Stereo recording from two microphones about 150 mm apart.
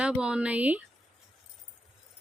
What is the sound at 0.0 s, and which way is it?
Speech, 5° right (ahead or behind).